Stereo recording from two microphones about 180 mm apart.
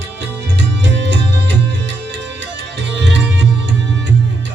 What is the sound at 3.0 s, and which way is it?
Music, 80° right.